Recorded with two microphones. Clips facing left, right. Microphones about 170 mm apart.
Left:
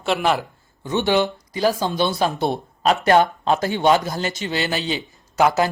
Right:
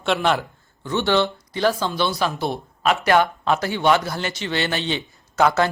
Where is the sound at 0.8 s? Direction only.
15° left (ahead or behind).